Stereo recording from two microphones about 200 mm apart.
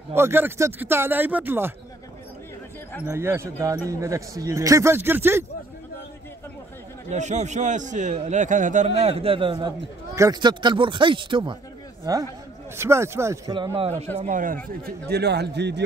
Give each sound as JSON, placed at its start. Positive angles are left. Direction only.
{"t": 0.1, "sound": "speech", "side_deg": -10}
{"t": 3.1, "sound": "speech", "side_deg": -10}
{"t": 7.1, "sound": "a man's voice", "side_deg": -35}